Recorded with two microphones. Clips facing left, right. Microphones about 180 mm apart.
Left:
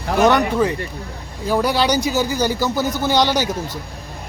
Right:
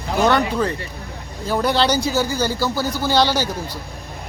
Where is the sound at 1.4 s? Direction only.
10° left (ahead or behind).